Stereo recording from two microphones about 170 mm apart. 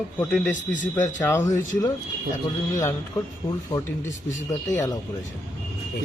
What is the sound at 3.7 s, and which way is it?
Speech, 25° left (ahead or behind).